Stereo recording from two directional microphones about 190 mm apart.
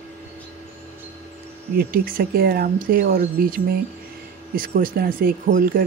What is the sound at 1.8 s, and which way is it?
Speech, 50° right (ahead or behind).